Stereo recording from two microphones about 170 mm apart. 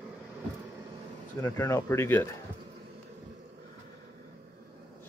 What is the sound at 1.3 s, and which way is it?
Speech, 15° left (ahead or behind).